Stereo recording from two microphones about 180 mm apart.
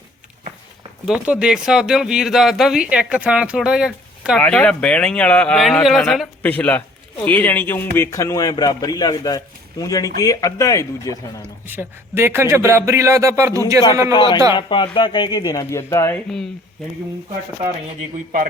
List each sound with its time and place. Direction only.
1.0 s speech: 5° right (ahead or behind)
4.4 s a man's voice: 5° left (ahead or behind)
11.4 s speech: 10° right (ahead or behind)
14.1 s a man's voice: 25° left (ahead or behind)